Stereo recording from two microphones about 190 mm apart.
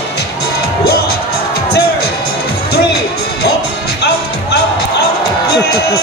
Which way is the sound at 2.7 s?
60° left (ahead or behind).